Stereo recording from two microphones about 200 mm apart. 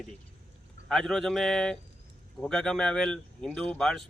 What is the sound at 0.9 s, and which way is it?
Speech, centre (ahead or behind).